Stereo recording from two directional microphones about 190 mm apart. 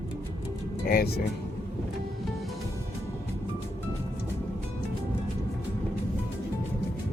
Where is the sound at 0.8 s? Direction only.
55° left (ahead or behind).